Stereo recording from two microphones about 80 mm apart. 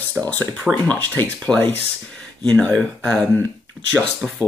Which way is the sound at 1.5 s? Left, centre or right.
Centre.